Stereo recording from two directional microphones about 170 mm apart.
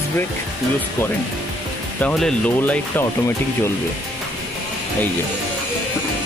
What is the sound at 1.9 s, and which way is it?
Speech, 5° left (ahead or behind).